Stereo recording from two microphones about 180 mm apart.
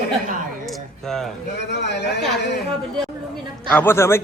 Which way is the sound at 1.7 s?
70° left (ahead or behind).